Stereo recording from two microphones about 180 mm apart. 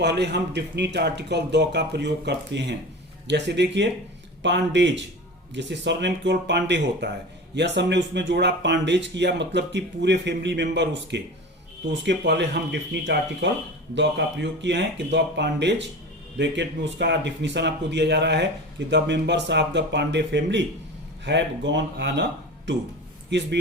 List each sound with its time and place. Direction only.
0.0 s a man's voice: 70° right (ahead or behind)